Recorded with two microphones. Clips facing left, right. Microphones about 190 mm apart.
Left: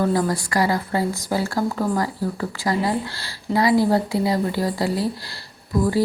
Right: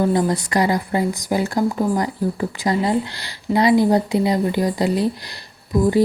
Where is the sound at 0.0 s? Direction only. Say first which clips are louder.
Right 2 dB; 20° right (ahead or behind).